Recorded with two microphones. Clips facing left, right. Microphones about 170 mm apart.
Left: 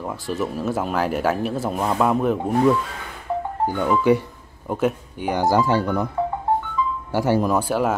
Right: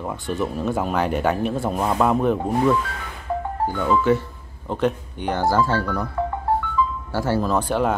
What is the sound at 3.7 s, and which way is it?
Speech, 15° left (ahead or behind).